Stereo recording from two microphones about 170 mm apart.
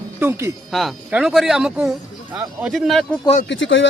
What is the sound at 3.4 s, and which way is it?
Speech, 90° left.